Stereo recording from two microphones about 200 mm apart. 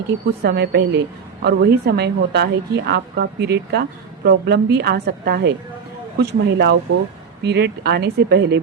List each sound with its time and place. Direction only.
0.3 s a woman's voice: 55° right (ahead or behind)